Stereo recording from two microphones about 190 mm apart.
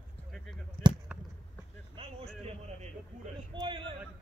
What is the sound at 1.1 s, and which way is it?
Basketball bounce, 5° right (ahead or behind).